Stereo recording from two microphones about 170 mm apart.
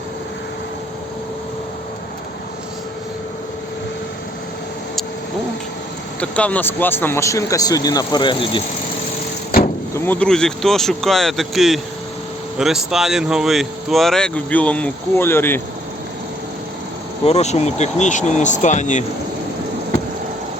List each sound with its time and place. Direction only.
6.1 s speech: 10° left (ahead or behind); by 8.6 s 30° left (ahead or behind)
9.5 s vehicle: 60° left (ahead or behind)
9.9 s speech: 10° left (ahead or behind)
17.2 s speech: 40° left (ahead or behind)